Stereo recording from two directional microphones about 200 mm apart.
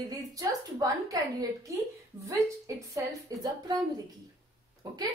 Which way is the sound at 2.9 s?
15° right (ahead or behind).